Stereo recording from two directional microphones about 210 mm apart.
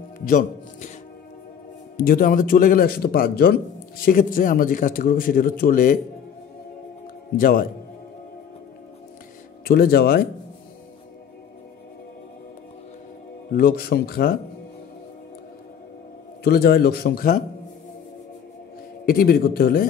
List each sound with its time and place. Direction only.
0.2 s music: 40° left (ahead or behind)
2.0 s a man's voice: 45° left (ahead or behind)
7.3 s a man's voice: 40° left (ahead or behind)
9.7 s a man's voice: 45° left (ahead or behind)
13.5 s a man's voice: 45° left (ahead or behind)
16.4 s a man's voice: 45° left (ahead or behind)
19.0 s a man's voice: 45° left (ahead or behind)